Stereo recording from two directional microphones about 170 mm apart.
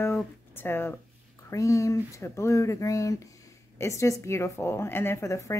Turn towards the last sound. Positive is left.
turn(degrees=20)  # may be behind; listen again after turning